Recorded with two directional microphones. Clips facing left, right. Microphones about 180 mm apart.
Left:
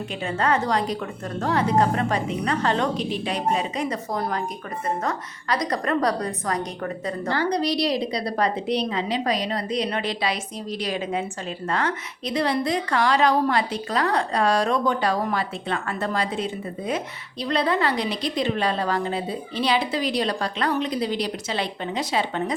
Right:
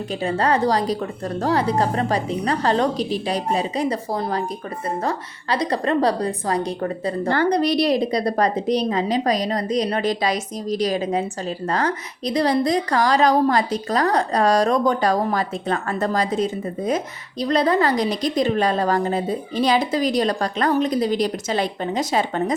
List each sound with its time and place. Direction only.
0.2 s a woman's voice: 35° right (ahead or behind)
7.3 s a woman's voice: 55° right (ahead or behind)